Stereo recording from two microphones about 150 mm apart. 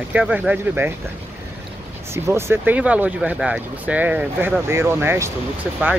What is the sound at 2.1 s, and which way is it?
Speech, 15° right (ahead or behind).